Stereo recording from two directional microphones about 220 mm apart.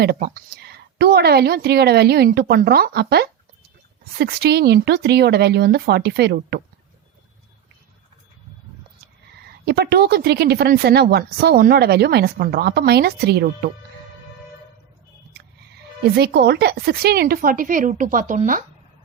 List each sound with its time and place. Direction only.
0.0 s a woman's voice: 45° right (ahead or behind)
9.4 s a woman's voice: 50° right (ahead or behind)
15.3 s a woman's voice: 50° right (ahead or behind)